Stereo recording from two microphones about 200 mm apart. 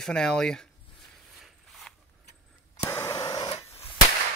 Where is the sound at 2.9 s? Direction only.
15° left (ahead or behind).